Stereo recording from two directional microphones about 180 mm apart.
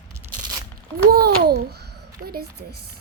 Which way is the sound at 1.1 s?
60° right (ahead or behind).